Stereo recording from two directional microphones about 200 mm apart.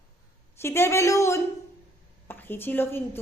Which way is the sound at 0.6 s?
10° left (ahead or behind).